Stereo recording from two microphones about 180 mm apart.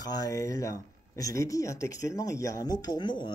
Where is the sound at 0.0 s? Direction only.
20° left (ahead or behind).